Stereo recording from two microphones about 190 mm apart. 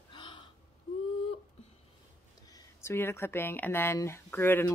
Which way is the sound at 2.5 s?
15° left (ahead or behind).